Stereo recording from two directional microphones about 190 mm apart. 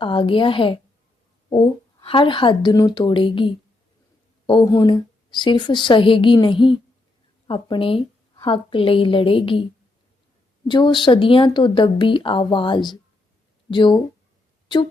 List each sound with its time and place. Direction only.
0.0 s speech: 25° left (ahead or behind)
2.0 s speech: 25° left (ahead or behind)
10.7 s speech: 25° left (ahead or behind)